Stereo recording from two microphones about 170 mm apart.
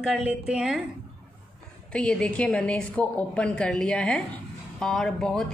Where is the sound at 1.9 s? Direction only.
5° left (ahead or behind).